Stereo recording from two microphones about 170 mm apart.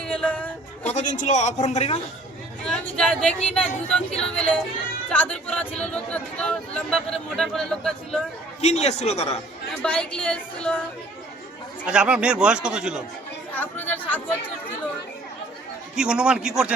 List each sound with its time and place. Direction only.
0.0 s music: 5° left (ahead or behind)
0.9 s speech: 45° left (ahead or behind)
2.6 s speech: 5° left (ahead or behind)
8.6 s a man's voice: 40° left (ahead or behind)
9.8 s a woman's voice: 5° left (ahead or behind)
11.9 s speech: 5° right (ahead or behind)
13.5 s speech: 10° left (ahead or behind)
16.0 s speech: 5° right (ahead or behind)